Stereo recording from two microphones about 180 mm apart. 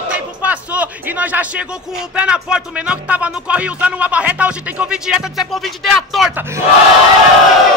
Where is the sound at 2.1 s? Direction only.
5° right (ahead or behind).